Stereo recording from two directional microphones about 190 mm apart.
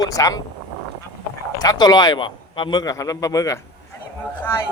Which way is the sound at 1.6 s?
20° left (ahead or behind).